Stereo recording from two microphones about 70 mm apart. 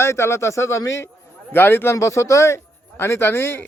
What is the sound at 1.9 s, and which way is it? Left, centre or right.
Speech, left.